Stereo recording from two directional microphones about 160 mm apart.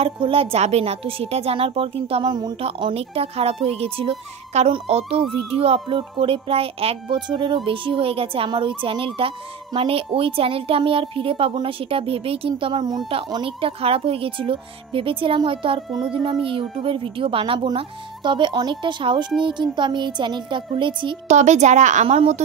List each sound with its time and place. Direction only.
0.0 s a woman's voice: 35° right (ahead or behind)
21.3 s a woman's voice: 45° right (ahead or behind)